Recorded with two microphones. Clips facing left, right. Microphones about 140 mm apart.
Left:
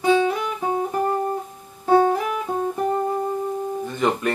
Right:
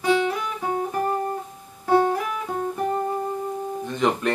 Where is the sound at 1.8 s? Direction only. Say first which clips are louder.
Left 3 dB; 20° left (ahead or behind).